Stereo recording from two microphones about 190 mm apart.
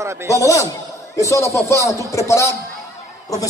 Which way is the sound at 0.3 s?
15° left (ahead or behind).